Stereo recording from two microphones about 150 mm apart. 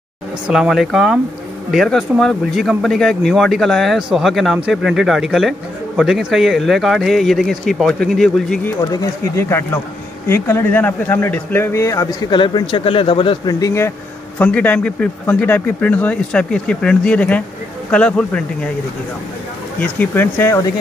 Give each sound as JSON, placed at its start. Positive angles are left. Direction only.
{"t": 0.5, "sound": "speech", "side_deg": 0}
{"t": 9.0, "sound": "speech", "side_deg": 20}
{"t": 13.6, "sound": "speech", "side_deg": 20}
{"t": 14.4, "sound": "speech", "side_deg": 10}
{"t": 19.8, "sound": "speech", "side_deg": 10}